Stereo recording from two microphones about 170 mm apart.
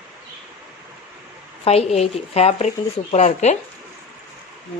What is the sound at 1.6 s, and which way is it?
A woman's voice, 40° left (ahead or behind).